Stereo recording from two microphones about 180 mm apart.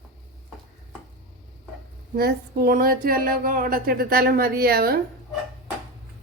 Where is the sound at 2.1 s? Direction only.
60° right (ahead or behind).